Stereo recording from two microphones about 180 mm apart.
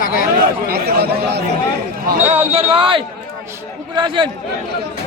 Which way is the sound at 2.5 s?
35° right (ahead or behind).